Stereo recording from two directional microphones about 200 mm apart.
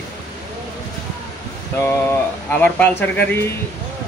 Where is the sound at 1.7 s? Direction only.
10° left (ahead or behind).